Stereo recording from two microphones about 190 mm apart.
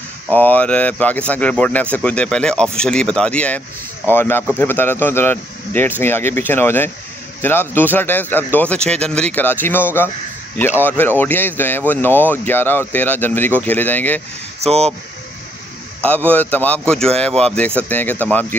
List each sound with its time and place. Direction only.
0.3 s speech: 10° left (ahead or behind)
14.6 s speech: 35° right (ahead or behind)
16.3 s speech: 10° left (ahead or behind)